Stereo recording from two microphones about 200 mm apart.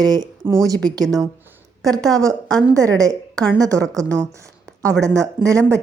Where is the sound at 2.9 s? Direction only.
15° right (ahead or behind).